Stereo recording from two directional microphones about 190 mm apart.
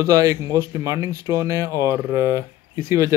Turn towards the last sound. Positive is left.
turn(degrees=-15)  # may be behind; listen again after turning